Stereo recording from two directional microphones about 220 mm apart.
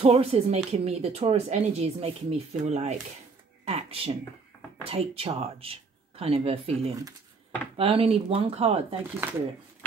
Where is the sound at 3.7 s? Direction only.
25° right (ahead or behind).